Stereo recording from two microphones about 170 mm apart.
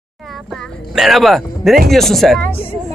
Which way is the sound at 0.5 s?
Centre (ahead or behind).